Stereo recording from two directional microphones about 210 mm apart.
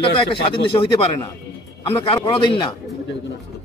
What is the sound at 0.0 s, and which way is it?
Speech, 25° left (ahead or behind).